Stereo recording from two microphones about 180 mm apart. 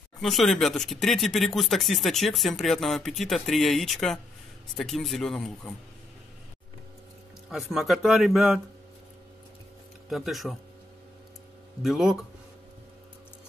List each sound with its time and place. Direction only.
0.2 s speech: centre (ahead or behind)
7.5 s speech: centre (ahead or behind)
10.0 s speech: centre (ahead or behind)
11.8 s speech: centre (ahead or behind)